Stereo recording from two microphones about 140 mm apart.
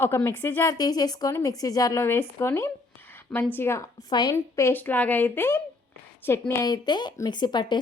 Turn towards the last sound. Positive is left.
turn(degrees=30)  # may be behind; listen again after turning